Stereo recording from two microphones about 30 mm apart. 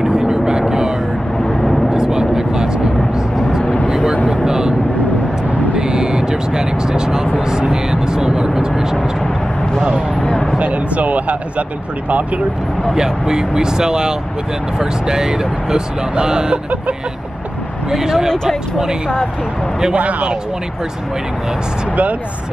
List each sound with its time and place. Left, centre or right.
0.1 s vehicle: right
1.5 s vehicle: centre
1.9 s vehicle: right
3.6 s a sound: left
4.3 s vehicle: right
5.8 s vehicle: right
10.2 s a sound: left
10.6 s a sound: right
12.9 s speech: right
17.9 s speech: centre
20.0 s speech: right